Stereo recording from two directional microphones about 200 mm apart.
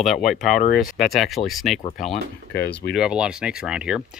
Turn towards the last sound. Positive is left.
turn(degrees=-5)  # may be behind; listen again after turning